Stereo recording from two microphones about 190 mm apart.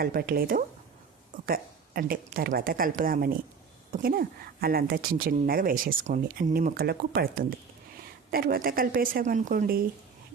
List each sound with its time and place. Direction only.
0.0 s speech: 50° right (ahead or behind)